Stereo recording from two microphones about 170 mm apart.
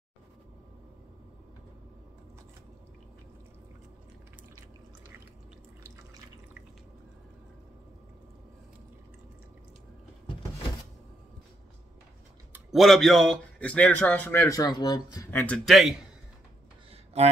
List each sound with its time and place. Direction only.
12.7 s a man's voice: centre (ahead or behind); by 15.2 s 25° left (ahead or behind)
15.3 s speech: 5° left (ahead or behind)
16.9 s a sound: 40° right (ahead or behind)